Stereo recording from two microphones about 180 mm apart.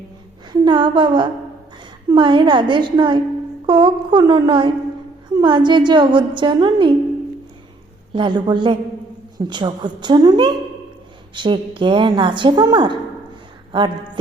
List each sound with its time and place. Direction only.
0.5 s humming: 25° right (ahead or behind)
2.0 s speech: 25° right (ahead or behind)
8.1 s speech: 25° right (ahead or behind)